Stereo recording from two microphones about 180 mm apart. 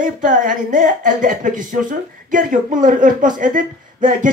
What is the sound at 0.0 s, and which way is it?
A woman's voice, 45° right (ahead or behind).